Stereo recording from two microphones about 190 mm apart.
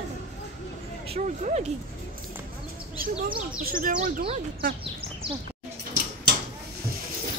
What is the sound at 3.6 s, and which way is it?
Speech, 45° right (ahead or behind).